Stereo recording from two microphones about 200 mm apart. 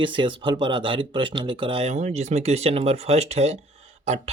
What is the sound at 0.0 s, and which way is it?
Speech, 25° right (ahead or behind).